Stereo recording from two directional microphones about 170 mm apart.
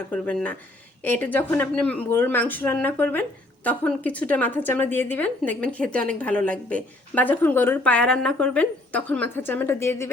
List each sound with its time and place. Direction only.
0.1 s speech: 10° left (ahead or behind)